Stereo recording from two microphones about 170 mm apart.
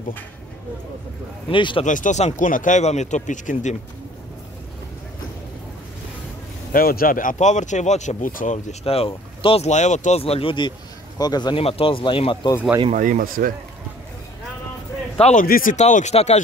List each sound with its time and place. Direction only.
1.5 s speech: 30° left (ahead or behind)
1.9 s speech: 45° left (ahead or behind)
6.7 s speech: 60° left (ahead or behind)
8.8 s speech: 35° left (ahead or behind)
12.9 s speech: 50° right (ahead or behind)
15.1 s speech: 40° left (ahead or behind)
15.4 s speech: 55° left (ahead or behind); by 16.3 s 40° left (ahead or behind)